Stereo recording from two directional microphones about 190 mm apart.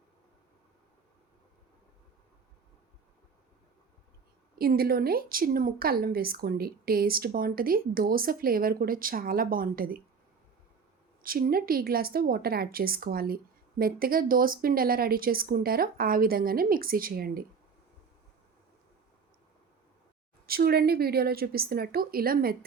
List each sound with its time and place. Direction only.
4.5 s a woman's voice: 50° right (ahead or behind)
11.2 s a woman's voice: 50° right (ahead or behind)
20.5 s a woman's voice: 55° right (ahead or behind)